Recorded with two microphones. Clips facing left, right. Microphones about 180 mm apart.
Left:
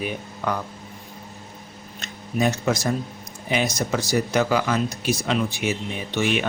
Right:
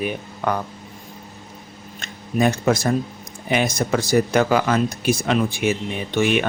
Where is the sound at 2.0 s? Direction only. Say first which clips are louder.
Right 3 dB; 50° right (ahead or behind).